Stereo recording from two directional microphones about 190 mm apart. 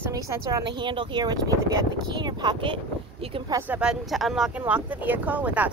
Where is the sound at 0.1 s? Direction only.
20° right (ahead or behind).